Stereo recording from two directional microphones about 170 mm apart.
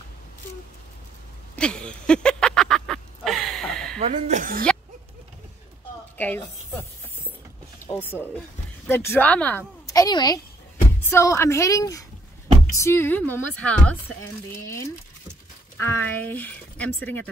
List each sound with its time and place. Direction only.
1.6 s a sound: 5° left (ahead or behind)
4.0 s speech: 45° right (ahead or behind)
6.1 s a woman's voice: 10° left (ahead or behind)
15.8 s speech: 10° left (ahead or behind)